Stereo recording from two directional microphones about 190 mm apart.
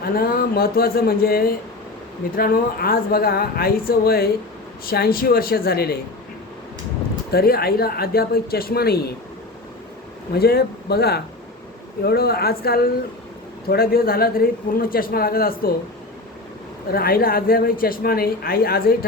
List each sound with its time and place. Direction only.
0.0 s speech: 50° left (ahead or behind)
7.3 s speech: 55° left (ahead or behind)
10.3 s speech: 55° left (ahead or behind)
16.9 s speech: 50° left (ahead or behind)